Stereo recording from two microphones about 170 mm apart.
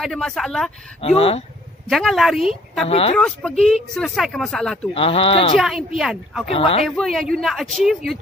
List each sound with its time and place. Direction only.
0.0 s speech: centre (ahead or behind)
1.0 s speech: 35° left (ahead or behind)
1.9 s speech: centre (ahead or behind)
2.9 s speech: 35° left (ahead or behind)
3.2 s speech: 5° left (ahead or behind)
4.9 s speech: 35° left (ahead or behind)
5.9 s speech: centre (ahead or behind)
6.5 s speech: 35° left (ahead or behind)
6.9 s speech: centre (ahead or behind)